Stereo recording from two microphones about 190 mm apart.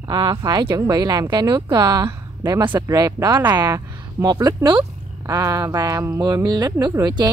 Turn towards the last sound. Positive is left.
turn(degrees=-25)  # may be behind; listen again after turning